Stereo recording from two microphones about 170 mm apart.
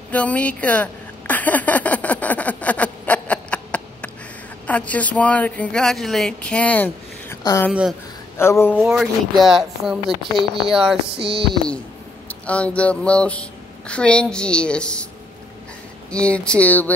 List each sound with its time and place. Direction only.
0.1 s a sound: 10° left (ahead or behind)
4.6 s a woman's voice: 10° left (ahead or behind)
8.7 s a woman's voice: 5° right (ahead or behind)
16.1 s a woman's voice: 5° left (ahead or behind)